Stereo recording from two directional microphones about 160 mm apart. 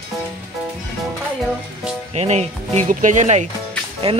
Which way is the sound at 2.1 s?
45° right (ahead or behind).